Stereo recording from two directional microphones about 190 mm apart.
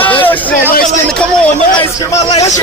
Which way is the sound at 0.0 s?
10° left (ahead or behind).